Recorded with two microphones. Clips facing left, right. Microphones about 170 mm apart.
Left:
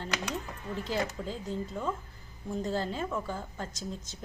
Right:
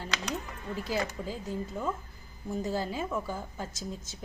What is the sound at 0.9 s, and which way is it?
A woman's voice, 5° right (ahead or behind).